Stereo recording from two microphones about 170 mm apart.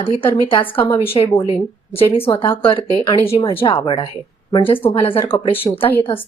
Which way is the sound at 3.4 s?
30° left (ahead or behind).